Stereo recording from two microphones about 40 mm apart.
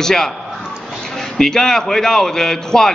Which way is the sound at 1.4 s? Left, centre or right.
Centre.